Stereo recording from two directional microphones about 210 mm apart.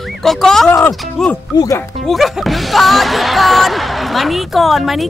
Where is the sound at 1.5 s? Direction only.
20° left (ahead or behind).